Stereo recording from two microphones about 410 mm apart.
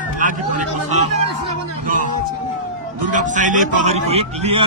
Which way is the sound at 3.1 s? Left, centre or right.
Centre.